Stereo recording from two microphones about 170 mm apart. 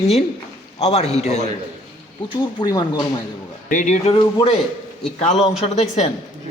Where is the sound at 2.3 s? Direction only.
25° left (ahead or behind).